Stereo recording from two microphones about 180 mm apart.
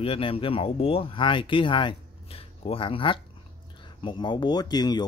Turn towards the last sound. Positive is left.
turn(degrees=20)  # may be behind; listen again after turning